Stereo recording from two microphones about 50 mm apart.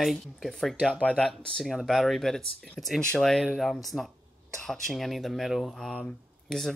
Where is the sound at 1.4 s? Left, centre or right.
Centre.